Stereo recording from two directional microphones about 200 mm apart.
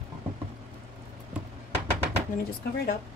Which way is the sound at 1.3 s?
5° right (ahead or behind).